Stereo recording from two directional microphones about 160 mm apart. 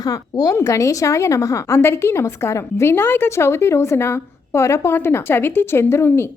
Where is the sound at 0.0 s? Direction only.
25° left (ahead or behind).